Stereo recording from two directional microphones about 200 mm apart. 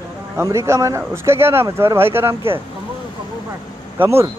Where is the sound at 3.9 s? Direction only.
15° right (ahead or behind).